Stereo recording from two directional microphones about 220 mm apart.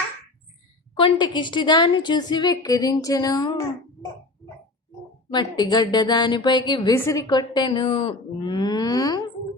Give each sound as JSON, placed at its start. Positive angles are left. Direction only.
{"t": 0.9, "sound": "speech", "side_deg": 20}
{"t": 5.3, "sound": "speech", "side_deg": 20}